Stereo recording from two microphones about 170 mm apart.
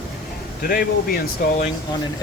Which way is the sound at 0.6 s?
60° left (ahead or behind).